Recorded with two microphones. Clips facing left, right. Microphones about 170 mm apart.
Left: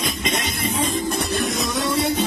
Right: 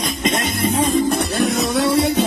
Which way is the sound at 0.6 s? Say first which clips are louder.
Right 6 dB; 65° right (ahead or behind).